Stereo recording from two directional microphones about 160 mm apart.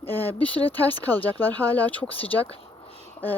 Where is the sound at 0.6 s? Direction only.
10° left (ahead or behind).